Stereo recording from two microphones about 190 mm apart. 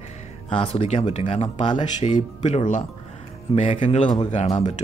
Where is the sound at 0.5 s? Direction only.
30° left (ahead or behind).